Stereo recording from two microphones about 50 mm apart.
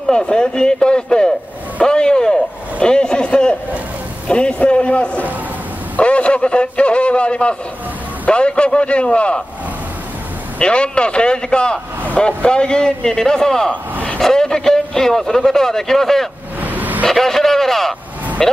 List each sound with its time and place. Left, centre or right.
0.1 s a man's voice: centre
1.8 s a sound: centre
4.3 s a man's voice: left
10.6 s a man's voice: left
16.6 s vehicle: right
17.1 s a sound: centre
18.4 s a man's voice: centre